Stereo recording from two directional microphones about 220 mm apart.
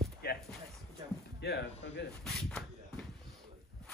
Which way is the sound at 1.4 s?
50° left (ahead or behind).